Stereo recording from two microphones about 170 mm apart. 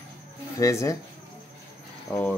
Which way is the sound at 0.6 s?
20° left (ahead or behind).